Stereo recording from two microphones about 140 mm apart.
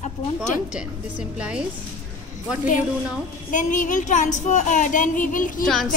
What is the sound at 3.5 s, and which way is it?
Speech, 65° left (ahead or behind).